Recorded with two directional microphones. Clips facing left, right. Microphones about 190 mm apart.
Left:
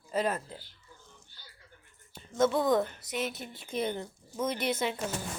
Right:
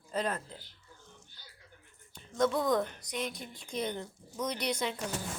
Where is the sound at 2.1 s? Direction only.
5° left (ahead or behind).